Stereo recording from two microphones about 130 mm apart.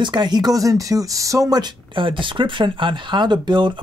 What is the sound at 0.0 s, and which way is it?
Speech, 35° right (ahead or behind).